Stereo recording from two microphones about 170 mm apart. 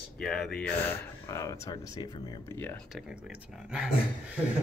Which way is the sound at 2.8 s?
Centre (ahead or behind).